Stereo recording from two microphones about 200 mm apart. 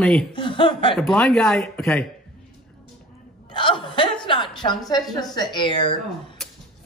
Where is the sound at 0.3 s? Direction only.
25° left (ahead or behind).